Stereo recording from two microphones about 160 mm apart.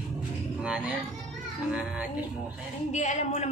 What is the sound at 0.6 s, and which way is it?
Speech, 5° right (ahead or behind).